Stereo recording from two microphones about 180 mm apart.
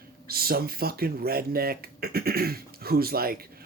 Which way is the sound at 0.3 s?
55° right (ahead or behind).